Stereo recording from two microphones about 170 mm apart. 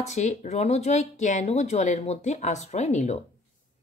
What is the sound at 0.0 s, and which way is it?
A woman's voice, 40° left (ahead or behind).